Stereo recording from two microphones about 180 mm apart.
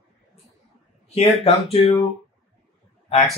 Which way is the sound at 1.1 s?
30° left (ahead or behind).